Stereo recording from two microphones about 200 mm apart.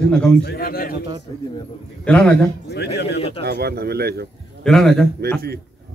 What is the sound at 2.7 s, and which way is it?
Speech, 55° left (ahead or behind).